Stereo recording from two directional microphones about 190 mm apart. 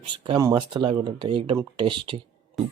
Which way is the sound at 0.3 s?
20° right (ahead or behind).